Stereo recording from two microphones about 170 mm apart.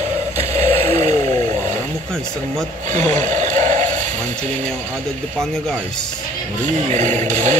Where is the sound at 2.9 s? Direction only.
45° right (ahead or behind).